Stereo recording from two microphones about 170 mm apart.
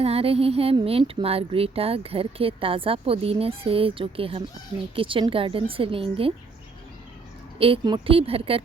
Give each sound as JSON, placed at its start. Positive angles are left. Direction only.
{"t": 0.0, "sound": "speech", "side_deg": -35}
{"t": 7.6, "sound": "speech", "side_deg": -30}